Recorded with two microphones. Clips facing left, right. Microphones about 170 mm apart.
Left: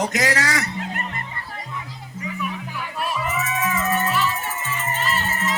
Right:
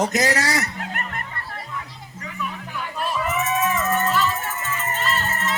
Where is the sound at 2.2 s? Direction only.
10° left (ahead or behind).